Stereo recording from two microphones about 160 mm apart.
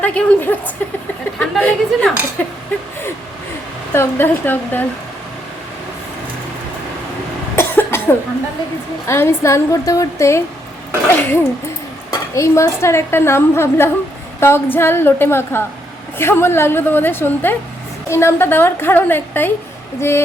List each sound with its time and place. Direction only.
0.0 s a woman's voice: 10° left (ahead or behind)
3.9 s a woman's voice: 15° left (ahead or behind)
7.5 s cough: 15° left (ahead or behind)
9.0 s a woman's voice: 15° left (ahead or behind)
12.1 s a woman's voice: 20° left (ahead or behind)